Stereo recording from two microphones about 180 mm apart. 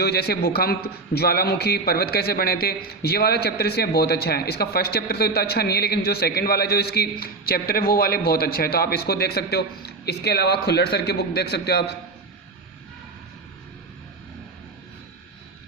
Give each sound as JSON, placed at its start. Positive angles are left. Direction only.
{"t": 0.0, "sound": "a man's voice", "side_deg": 60}